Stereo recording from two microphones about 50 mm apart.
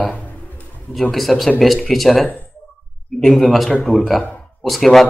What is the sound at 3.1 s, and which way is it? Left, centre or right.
A man's voice, centre.